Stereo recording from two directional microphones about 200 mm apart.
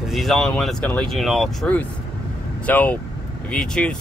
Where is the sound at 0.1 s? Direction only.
Centre (ahead or behind).